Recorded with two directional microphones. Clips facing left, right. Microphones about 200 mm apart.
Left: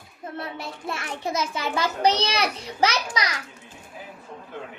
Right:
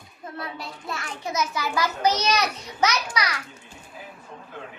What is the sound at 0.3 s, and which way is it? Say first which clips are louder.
A child's voice: left 1 dB; 25° left (ahead or behind).